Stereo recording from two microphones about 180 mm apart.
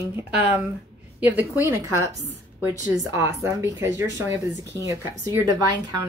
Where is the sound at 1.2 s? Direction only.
10° right (ahead or behind).